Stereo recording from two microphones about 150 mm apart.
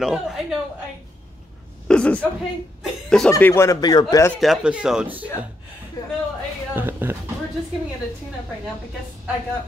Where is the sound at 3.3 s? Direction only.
20° left (ahead or behind).